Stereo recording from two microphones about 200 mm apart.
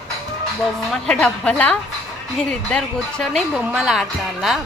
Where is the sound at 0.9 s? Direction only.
5° left (ahead or behind).